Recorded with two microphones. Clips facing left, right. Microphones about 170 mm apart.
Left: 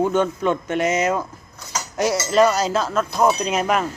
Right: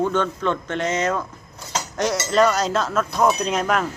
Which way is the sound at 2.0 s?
5° left (ahead or behind).